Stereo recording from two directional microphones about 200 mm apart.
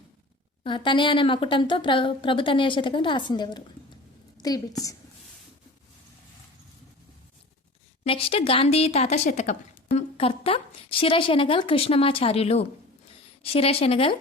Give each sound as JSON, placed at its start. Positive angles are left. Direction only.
{"t": 0.6, "sound": "a woman's voice", "side_deg": 25}
{"t": 8.0, "sound": "a woman's voice", "side_deg": 30}